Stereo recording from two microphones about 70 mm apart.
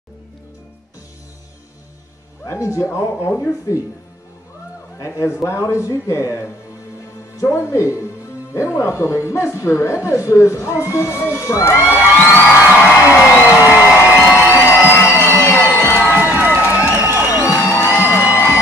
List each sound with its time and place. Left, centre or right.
2.4 s children shouting: left
5.0 s children shouting: left
13.1 s a sound: left
14.3 s music: left
16.2 s music: right
17.6 s music: left
18.3 s a sound: left